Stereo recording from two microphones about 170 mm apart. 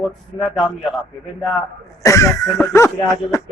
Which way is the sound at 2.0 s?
20° left (ahead or behind).